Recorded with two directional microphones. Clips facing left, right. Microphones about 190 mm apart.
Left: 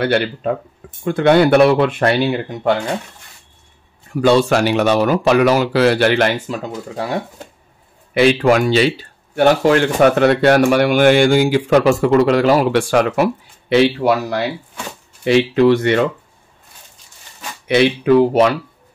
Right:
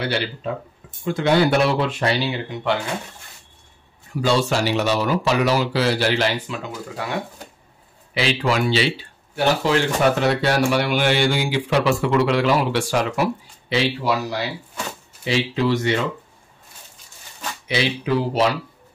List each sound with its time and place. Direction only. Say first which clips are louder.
0.0 s speech: left 7 dB; 55° left (ahead or behind)
4.2 s speech: left 7 dB; 55° left (ahead or behind); by 7.2 s 40° left (ahead or behind)
8.1 s speech: left 9 dB; 55° left (ahead or behind)
17.6 s speech: left 9 dB; 55° left (ahead or behind)